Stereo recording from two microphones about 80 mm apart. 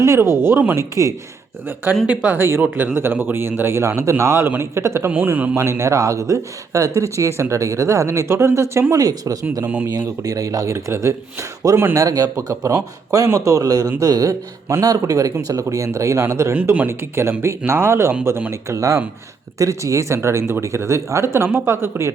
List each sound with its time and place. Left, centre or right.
0.0 s speech: right
0.8 s speech: right
1.6 s speech: right
5.1 s speech: right
8.9 s speech: right
11.9 s speech: right
16.6 s speech: right
18.7 s speech: right